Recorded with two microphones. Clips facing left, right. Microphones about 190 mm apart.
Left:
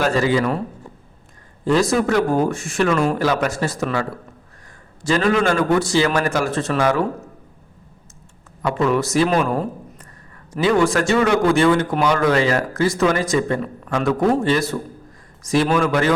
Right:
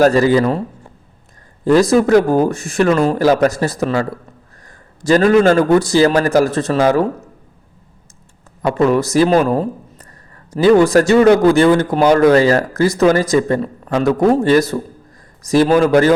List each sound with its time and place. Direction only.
0.0 s speech: 40° right (ahead or behind)
1.6 s speech: 40° right (ahead or behind)
5.0 s speech: 40° right (ahead or behind)
8.6 s speech: 40° right (ahead or behind)